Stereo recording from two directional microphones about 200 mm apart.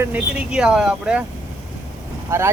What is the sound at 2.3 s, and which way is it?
Speech, 15° right (ahead or behind).